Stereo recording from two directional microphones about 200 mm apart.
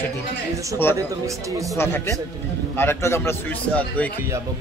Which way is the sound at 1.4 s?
15° right (ahead or behind).